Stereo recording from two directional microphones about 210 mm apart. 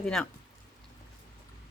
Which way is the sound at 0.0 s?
Centre (ahead or behind).